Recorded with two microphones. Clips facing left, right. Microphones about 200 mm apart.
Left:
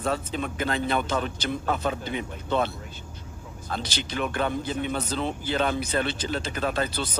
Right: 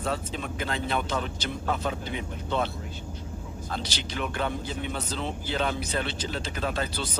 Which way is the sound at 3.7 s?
55° left (ahead or behind).